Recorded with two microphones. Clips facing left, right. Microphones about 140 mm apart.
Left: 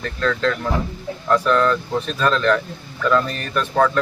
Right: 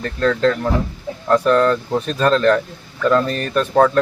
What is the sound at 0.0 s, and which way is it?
Speech, 40° right (ahead or behind).